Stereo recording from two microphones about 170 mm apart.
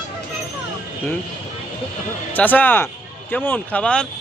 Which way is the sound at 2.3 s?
10° left (ahead or behind).